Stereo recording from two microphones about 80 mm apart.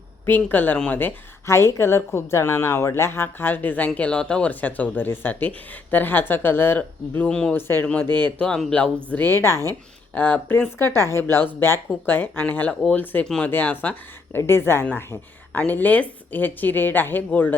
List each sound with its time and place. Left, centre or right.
0.3 s a woman's voice: left
7.3 s speech: centre
7.5 s a woman's voice: left
8.0 s speech: right
8.4 s speech: centre
9.0 s a woman's voice: left
10.8 s a woman's voice: left
13.2 s speech: centre
13.5 s a woman's voice: left
15.5 s a woman's voice: left